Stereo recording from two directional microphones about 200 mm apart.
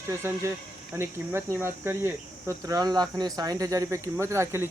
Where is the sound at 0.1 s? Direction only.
15° right (ahead or behind).